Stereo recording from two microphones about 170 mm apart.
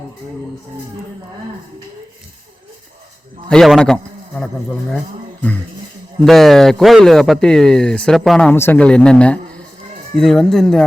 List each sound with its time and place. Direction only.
3.5 s a man's voice: centre (ahead or behind)
6.2 s speech: centre (ahead or behind)
8.4 s speech: 10° left (ahead or behind)